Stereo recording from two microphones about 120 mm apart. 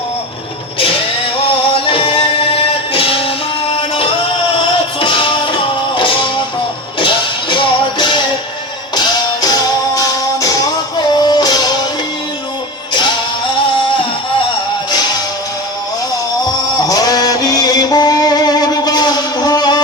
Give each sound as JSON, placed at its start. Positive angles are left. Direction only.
{"t": 1.7, "sound": "music", "side_deg": 45}
{"t": 16.7, "sound": "music", "side_deg": 35}